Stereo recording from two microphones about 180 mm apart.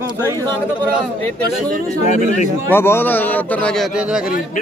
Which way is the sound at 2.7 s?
10° left (ahead or behind).